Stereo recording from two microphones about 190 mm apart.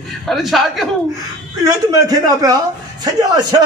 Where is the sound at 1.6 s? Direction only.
20° right (ahead or behind).